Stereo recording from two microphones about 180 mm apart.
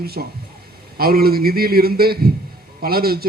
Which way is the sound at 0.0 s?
60° right (ahead or behind).